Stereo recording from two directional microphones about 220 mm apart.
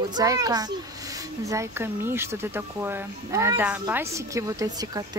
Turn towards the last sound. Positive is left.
turn(degrees=-15)  # may be behind; listen again after turning